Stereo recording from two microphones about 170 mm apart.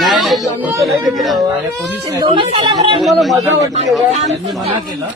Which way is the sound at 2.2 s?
30° right (ahead or behind).